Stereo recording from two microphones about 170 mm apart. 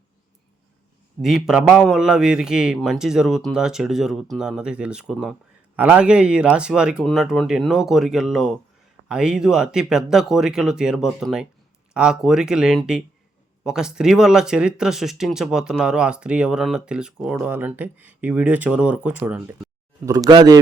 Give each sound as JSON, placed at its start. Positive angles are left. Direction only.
{"t": 1.2, "sound": "speech", "side_deg": -5}
{"t": 20.1, "sound": "speech", "side_deg": -20}